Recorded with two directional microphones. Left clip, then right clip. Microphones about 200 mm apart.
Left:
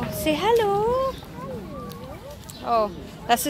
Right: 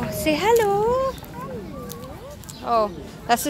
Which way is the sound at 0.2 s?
5° right (ahead or behind).